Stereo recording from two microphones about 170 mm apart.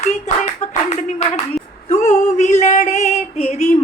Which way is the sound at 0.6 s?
40° left (ahead or behind).